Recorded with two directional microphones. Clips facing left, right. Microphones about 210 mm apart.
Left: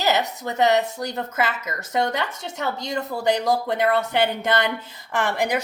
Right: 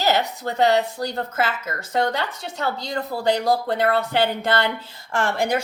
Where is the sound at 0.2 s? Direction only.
20° left (ahead or behind).